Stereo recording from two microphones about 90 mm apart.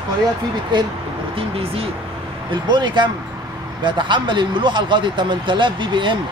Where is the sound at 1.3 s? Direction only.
90° right.